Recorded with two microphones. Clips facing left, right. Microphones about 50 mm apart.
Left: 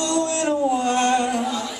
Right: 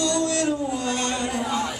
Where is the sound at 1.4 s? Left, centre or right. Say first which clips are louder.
Even; right.